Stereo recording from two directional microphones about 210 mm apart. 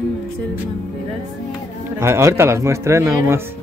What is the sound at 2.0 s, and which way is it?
Speech, 15° right (ahead or behind).